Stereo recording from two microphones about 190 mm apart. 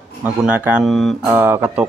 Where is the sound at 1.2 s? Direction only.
15° right (ahead or behind).